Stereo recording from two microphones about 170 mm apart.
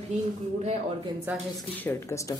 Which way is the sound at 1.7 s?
10° left (ahead or behind).